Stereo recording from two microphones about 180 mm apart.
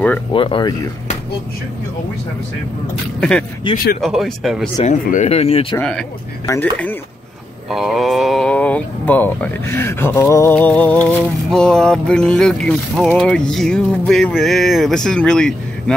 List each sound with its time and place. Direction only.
0.3 s speech: 30° left (ahead or behind)
3.2 s speech: 5° left (ahead or behind)
3.7 s speech: 50° left (ahead or behind)
4.0 s speech: centre (ahead or behind)
4.7 s speech: 40° left (ahead or behind)
5.8 s speech: 5° left (ahead or behind)
7.7 s speech: centre (ahead or behind)